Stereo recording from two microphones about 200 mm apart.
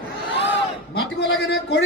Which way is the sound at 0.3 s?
65° left (ahead or behind).